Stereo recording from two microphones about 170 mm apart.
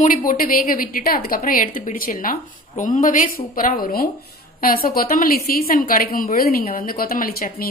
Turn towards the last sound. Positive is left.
turn(degrees=60)  # may be behind; listen again after turning